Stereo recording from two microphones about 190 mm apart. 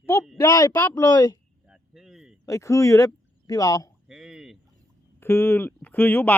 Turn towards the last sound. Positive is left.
turn(degrees=10)  # may be behind; listen again after turning